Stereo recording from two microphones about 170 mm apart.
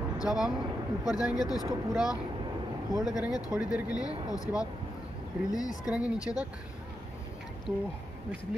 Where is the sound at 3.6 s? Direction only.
5° right (ahead or behind).